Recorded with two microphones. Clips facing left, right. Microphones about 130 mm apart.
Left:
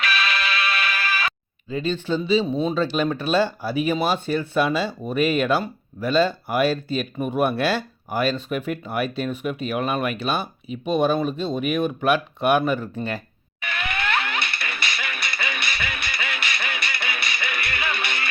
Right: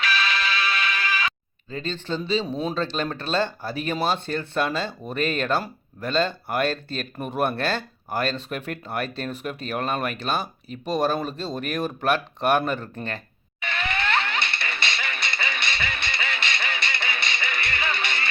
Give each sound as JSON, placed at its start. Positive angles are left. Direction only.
{"t": 1.7, "sound": "speech", "side_deg": 10}
{"t": 13.6, "sound": "music", "side_deg": -25}